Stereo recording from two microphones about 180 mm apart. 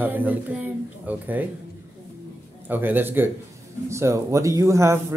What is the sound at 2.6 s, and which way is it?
Speech, 10° right (ahead or behind).